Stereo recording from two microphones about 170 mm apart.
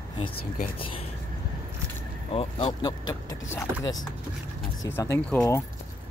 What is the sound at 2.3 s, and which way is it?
Speech, 25° left (ahead or behind).